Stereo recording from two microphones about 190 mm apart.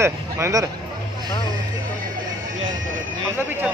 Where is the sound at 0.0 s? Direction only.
15° right (ahead or behind).